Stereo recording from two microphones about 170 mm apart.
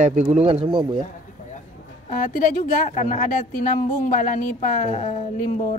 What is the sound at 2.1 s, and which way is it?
A woman's voice, 50° left (ahead or behind).